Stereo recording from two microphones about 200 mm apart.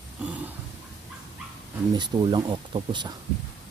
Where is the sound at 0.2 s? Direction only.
5° right (ahead or behind).